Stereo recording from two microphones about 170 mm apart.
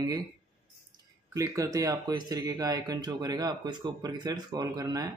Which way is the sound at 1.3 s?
20° right (ahead or behind).